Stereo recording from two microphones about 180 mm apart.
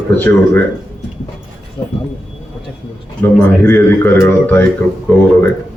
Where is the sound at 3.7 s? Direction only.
10° left (ahead or behind).